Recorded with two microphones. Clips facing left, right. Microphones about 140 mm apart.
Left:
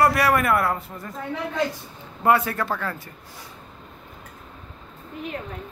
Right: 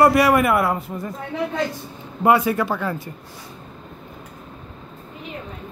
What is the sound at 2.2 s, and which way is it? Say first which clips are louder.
Speech: right 3 dB; 15° right (ahead or behind).